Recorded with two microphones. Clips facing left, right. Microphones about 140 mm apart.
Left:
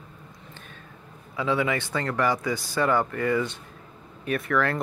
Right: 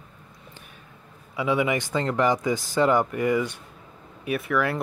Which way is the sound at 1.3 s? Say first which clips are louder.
Right 2 dB; 15° right (ahead or behind).